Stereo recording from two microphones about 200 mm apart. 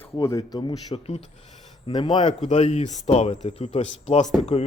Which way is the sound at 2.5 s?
35° left (ahead or behind).